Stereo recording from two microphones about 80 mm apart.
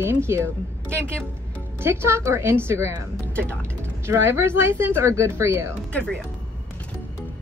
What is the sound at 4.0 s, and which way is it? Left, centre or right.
A woman's voice, right.